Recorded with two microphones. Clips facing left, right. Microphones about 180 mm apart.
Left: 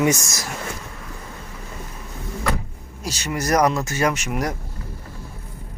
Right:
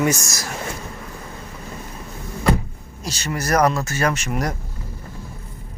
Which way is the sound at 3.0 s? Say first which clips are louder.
Left 1 dB; 10° left (ahead or behind).